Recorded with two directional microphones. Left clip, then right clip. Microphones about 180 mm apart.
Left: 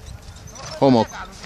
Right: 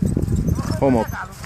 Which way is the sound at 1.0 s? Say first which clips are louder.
Right 2 dB; 15° left (ahead or behind).